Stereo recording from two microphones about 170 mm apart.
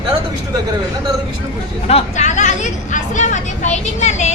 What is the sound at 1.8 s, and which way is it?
Speech, 40° left (ahead or behind).